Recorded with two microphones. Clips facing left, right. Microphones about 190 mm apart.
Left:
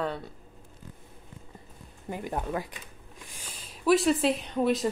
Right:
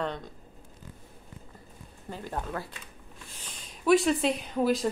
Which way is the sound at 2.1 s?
15° left (ahead or behind).